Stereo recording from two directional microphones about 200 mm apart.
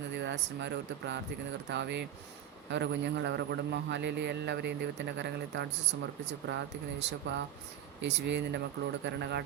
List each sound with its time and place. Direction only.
0.2 s a man's voice: 60° right (ahead or behind)